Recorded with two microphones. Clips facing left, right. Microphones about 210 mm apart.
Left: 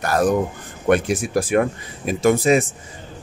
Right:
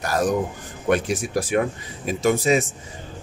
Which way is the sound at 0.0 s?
60° left (ahead or behind).